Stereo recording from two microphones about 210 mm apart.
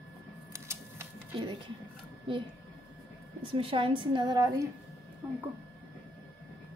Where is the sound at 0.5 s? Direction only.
10° right (ahead or behind).